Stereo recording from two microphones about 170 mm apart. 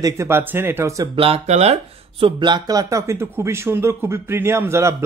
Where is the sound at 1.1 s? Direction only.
35° right (ahead or behind).